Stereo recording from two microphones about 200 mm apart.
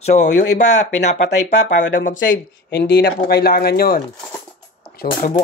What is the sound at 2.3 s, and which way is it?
Speech, 55° left (ahead or behind).